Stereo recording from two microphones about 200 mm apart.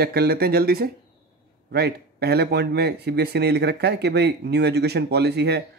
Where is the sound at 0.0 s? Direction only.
50° right (ahead or behind).